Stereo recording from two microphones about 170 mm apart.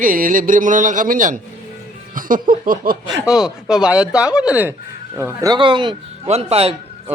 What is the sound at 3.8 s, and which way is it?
A man's voice, 5° right (ahead or behind).